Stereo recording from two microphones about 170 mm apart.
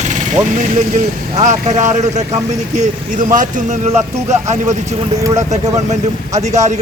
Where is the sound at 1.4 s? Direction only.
45° right (ahead or behind).